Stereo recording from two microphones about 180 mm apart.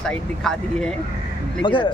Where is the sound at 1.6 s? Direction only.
25° left (ahead or behind).